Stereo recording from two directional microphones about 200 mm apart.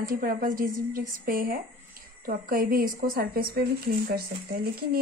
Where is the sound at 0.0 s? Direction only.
45° right (ahead or behind).